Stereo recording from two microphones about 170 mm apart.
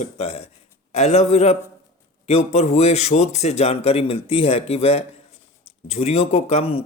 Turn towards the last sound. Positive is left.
turn(degrees=35)  # may be behind; listen again after turning